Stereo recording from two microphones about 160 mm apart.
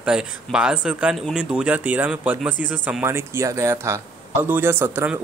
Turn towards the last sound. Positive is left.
turn(degrees=-15)  # may be behind; listen again after turning